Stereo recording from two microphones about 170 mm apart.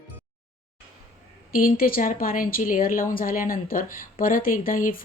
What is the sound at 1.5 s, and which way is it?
A woman's voice, 60° left (ahead or behind).